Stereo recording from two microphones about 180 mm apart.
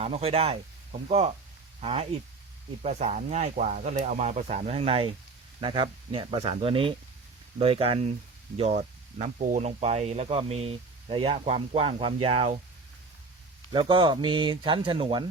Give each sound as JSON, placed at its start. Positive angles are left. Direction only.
{"t": 0.0, "sound": "speech", "side_deg": -35}
{"t": 13.7, "sound": "speech", "side_deg": -30}